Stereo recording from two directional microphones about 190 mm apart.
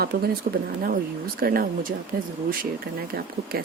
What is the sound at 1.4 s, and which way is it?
Speech, 50° right (ahead or behind).